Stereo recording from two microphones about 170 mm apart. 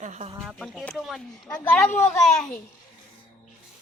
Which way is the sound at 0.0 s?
40° right (ahead or behind).